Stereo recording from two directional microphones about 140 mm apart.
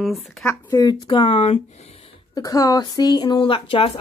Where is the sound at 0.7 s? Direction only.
30° left (ahead or behind).